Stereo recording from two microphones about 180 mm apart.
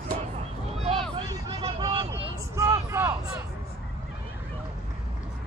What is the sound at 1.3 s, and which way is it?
Hubbub, 20° right (ahead or behind).